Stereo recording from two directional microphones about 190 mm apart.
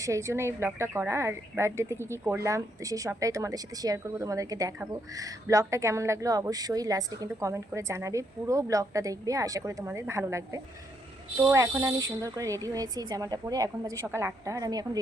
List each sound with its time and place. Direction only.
0.0 s a woman's voice: 15° right (ahead or behind)